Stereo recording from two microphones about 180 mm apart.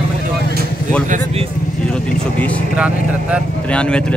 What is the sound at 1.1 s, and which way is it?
Speech, 35° right (ahead or behind).